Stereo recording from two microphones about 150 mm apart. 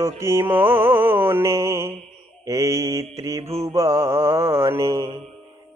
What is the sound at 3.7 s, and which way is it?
Mantra, 20° right (ahead or behind).